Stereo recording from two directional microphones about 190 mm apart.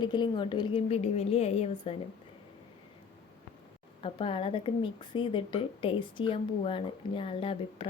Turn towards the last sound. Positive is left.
turn(degrees=30)  # may be behind; listen again after turning